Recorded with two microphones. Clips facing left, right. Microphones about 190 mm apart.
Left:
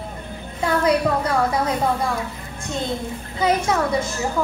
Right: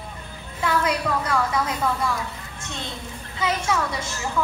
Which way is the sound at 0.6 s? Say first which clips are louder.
Left 5 dB; 35° left (ahead or behind).